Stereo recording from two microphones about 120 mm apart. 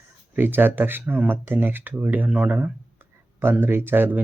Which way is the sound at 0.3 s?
15° right (ahead or behind).